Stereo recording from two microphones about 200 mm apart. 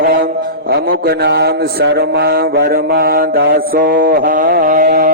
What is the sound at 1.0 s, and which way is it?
Mantra, 55° right (ahead or behind).